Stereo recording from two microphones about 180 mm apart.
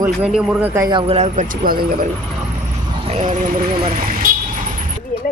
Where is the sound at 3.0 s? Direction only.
40° right (ahead or behind).